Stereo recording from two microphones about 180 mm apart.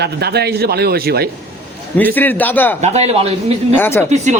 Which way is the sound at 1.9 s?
10° left (ahead or behind).